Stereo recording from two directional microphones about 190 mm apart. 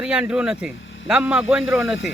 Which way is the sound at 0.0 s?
5° right (ahead or behind).